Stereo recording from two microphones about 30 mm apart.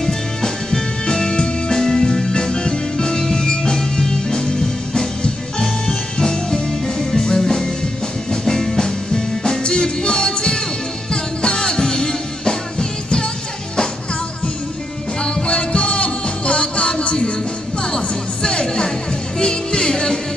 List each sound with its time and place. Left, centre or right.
0.0 s music: centre
15.2 s music: left